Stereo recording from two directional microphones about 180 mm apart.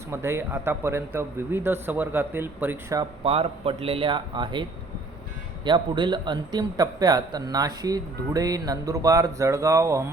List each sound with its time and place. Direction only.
0.1 s a man's voice: 15° right (ahead or behind)
3.2 s speech: 30° right (ahead or behind)
5.6 s a man's voice: 25° right (ahead or behind)